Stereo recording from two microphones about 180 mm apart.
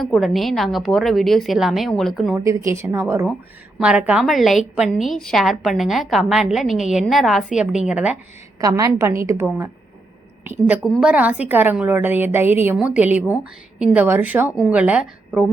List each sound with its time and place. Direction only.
0.0 s a woman's voice: centre (ahead or behind)
2.4 s a woman's voice: 15° right (ahead or behind)
8.6 s a woman's voice: 20° right (ahead or behind)